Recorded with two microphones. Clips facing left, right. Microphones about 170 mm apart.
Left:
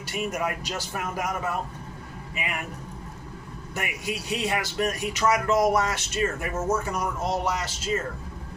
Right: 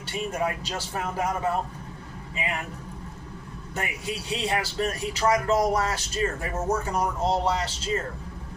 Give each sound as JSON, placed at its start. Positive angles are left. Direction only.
{"t": 0.0, "sound": "speech", "side_deg": -30}
{"t": 3.8, "sound": "speech", "side_deg": -30}